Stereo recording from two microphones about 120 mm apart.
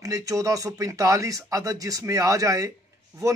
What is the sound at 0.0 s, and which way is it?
A man's voice, 30° right (ahead or behind).